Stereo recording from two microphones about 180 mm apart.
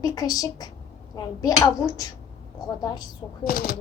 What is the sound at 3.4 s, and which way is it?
Speech, 55° left (ahead or behind).